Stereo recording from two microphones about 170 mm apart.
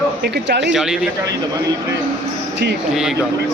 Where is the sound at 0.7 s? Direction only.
5° right (ahead or behind).